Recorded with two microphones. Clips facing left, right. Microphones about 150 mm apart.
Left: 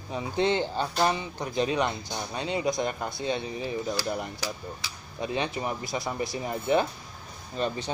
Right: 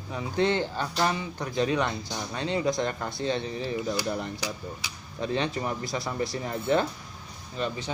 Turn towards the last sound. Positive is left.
turn(degrees=35)  # may be behind; listen again after turning